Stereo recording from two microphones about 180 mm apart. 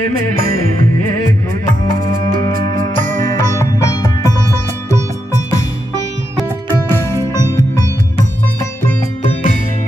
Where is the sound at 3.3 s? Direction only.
15° left (ahead or behind).